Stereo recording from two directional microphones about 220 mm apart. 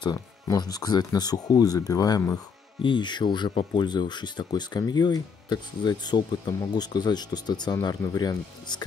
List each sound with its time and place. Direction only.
0.0 s speech: 15° left (ahead or behind)